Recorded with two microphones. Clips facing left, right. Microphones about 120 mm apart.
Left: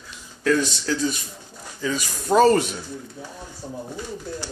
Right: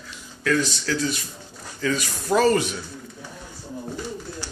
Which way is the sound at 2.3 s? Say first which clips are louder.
Left 3 dB; 30° left (ahead or behind).